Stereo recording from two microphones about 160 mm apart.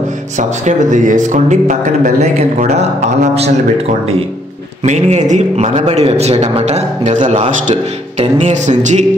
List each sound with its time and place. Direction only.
0.4 s a man's voice: 50° right (ahead or behind)
4.8 s a man's voice: 50° right (ahead or behind)